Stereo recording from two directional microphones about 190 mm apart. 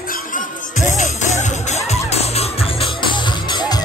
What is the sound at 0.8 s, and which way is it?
Music, 40° left (ahead or behind).